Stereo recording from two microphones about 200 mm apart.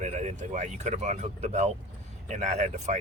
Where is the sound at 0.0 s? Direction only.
35° right (ahead or behind).